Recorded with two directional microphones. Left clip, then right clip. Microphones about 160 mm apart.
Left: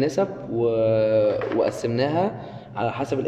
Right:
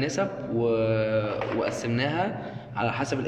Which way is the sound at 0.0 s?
30° left (ahead or behind).